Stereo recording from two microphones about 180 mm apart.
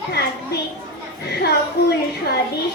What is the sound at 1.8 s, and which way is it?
Speech, 65° left (ahead or behind).